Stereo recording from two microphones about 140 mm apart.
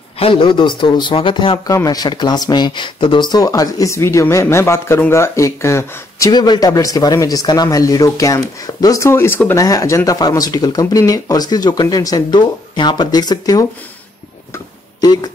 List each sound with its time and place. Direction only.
0.2 s a man's voice: 40° left (ahead or behind)
1.7 s speech: 25° left (ahead or behind)
14.5 s a sound: 30° left (ahead or behind)